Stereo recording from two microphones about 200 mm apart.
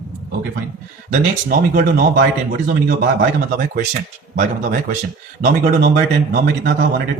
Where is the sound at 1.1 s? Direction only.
45° right (ahead or behind).